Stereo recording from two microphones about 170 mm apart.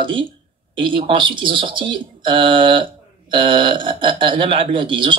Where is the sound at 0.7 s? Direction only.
30° right (ahead or behind).